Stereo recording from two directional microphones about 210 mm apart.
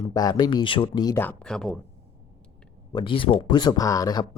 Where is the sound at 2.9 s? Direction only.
25° left (ahead or behind).